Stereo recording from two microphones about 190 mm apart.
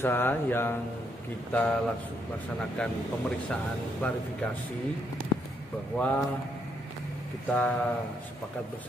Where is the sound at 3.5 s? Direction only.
5° left (ahead or behind).